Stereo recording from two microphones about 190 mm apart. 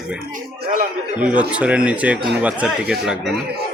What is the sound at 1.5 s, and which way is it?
A man's voice, 5° right (ahead or behind).